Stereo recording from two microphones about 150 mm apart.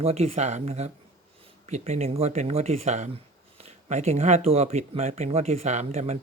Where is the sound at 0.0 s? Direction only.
45° right (ahead or behind).